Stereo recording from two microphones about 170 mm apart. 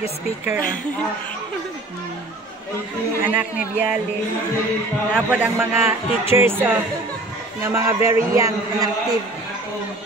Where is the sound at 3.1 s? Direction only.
10° right (ahead or behind).